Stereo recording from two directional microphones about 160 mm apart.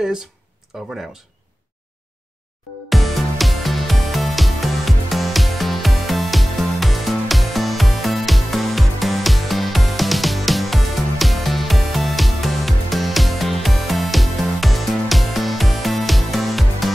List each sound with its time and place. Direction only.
0.7 s speech: centre (ahead or behind)
2.9 s music: centre (ahead or behind)